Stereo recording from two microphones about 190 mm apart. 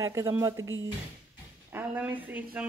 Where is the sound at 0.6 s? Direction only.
90° right.